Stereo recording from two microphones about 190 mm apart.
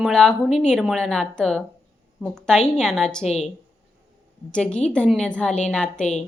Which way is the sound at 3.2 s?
35° left (ahead or behind).